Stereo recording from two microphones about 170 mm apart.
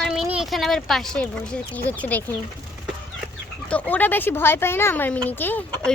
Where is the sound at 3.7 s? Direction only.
10° left (ahead or behind).